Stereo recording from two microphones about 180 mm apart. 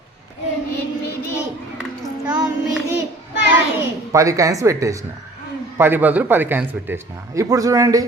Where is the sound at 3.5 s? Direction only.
15° right (ahead or behind).